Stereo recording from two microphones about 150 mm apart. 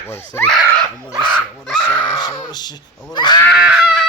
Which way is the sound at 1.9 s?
25° left (ahead or behind).